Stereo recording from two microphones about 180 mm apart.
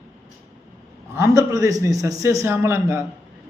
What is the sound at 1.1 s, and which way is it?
A man's voice, 15° right (ahead or behind).